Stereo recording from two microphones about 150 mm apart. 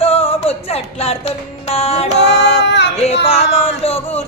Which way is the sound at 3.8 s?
40° left (ahead or behind).